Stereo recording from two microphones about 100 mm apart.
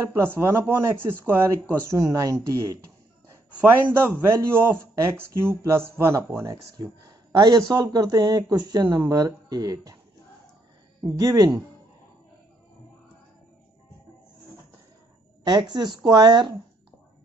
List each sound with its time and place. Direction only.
0.0 s speech: 25° right (ahead or behind)
3.9 s speech: 25° right (ahead or behind); by 9.9 s 40° right (ahead or behind)
11.1 s speech: 35° right (ahead or behind)
15.4 s a woman's voice: 45° right (ahead or behind)